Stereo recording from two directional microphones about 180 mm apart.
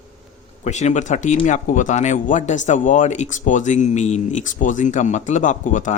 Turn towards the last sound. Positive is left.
turn(degrees=45)  # may be behind; listen again after turning